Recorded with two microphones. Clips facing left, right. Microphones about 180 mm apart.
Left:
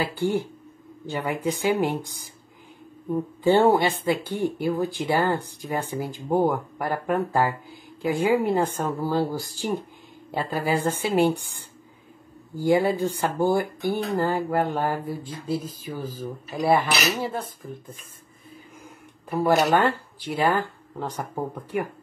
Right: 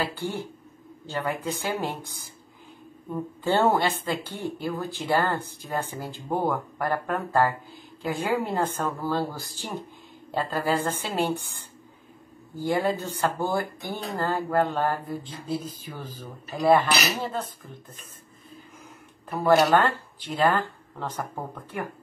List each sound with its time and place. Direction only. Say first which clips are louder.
0.1 s speech: left 7 dB; 15° left (ahead or behind)
3.4 s speech: left 4 dB; 15° left (ahead or behind)
19.2 s speech: even; 10° left (ahead or behind)